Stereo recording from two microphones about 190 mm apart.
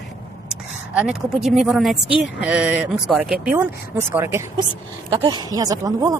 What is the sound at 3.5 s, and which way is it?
Speech, 15° right (ahead or behind).